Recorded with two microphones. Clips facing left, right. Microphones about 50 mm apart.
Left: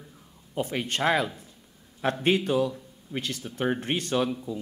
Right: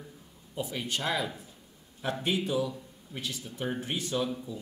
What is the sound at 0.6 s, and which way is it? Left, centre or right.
Speech, left.